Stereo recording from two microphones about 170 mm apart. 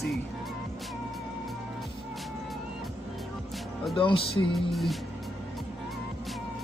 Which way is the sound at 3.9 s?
30° left (ahead or behind).